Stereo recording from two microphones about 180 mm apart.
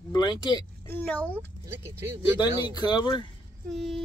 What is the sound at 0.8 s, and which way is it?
Speech, 10° left (ahead or behind).